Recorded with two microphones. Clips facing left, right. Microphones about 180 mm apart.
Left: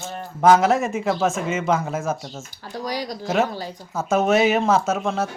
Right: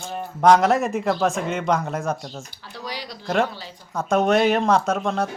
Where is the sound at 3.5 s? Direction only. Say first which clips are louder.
Left 7 dB; 45° left (ahead or behind).